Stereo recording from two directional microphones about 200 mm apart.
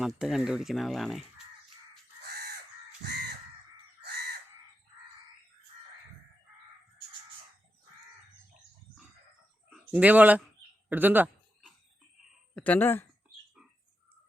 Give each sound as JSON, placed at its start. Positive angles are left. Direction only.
{"t": 0.2, "sound": "speech", "side_deg": 0}
{"t": 2.2, "sound": "crow", "side_deg": -55}
{"t": 4.0, "sound": "chicken", "side_deg": -55}
{"t": 9.6, "sound": "speech", "side_deg": -5}
{"t": 10.8, "sound": "a sound", "side_deg": -10}
{"t": 12.5, "sound": "speech", "side_deg": 10}